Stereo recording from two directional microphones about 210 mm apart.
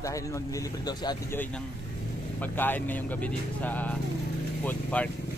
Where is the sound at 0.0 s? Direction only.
15° left (ahead or behind).